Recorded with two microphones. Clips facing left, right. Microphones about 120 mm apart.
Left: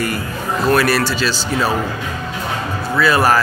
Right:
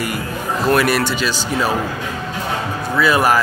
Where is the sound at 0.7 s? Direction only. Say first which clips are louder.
Left 1 dB; 15° right (ahead or behind).